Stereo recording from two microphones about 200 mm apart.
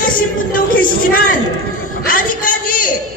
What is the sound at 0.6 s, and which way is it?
Speech, 45° left (ahead or behind).